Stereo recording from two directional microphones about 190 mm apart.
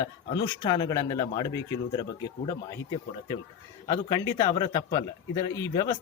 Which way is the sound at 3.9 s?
20° left (ahead or behind).